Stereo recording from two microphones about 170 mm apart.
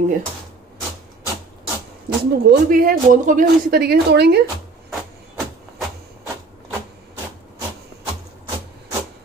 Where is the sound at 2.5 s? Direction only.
55° right (ahead or behind); by 4.3 s 75° right (ahead or behind).